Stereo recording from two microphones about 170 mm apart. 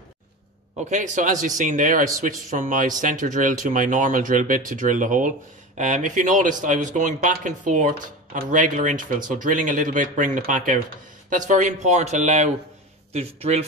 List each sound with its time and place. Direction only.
0.8 s speech: 45° right (ahead or behind)